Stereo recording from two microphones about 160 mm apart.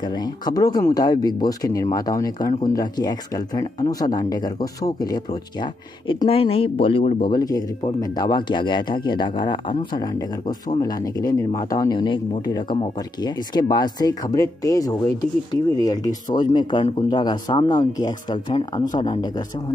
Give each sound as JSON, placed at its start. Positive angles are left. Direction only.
{"t": 0.0, "sound": "speech", "side_deg": 25}